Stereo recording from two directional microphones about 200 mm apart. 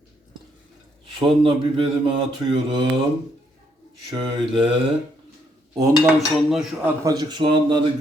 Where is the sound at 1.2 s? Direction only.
25° right (ahead or behind).